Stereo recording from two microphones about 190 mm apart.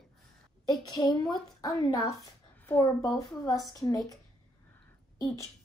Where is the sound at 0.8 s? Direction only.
20° left (ahead or behind).